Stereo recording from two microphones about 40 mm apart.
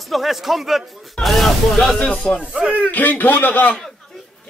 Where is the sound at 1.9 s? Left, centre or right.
Left.